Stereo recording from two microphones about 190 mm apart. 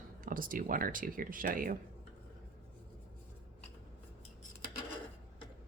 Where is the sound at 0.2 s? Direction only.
45° right (ahead or behind).